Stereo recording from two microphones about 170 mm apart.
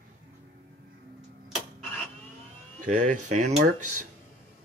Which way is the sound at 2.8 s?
50° right (ahead or behind).